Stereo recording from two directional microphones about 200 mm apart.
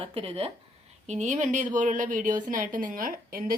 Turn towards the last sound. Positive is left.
turn(degrees=-45)  # may be behind; listen again after turning